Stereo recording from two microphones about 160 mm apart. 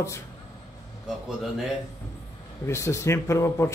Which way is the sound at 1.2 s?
Centre (ahead or behind).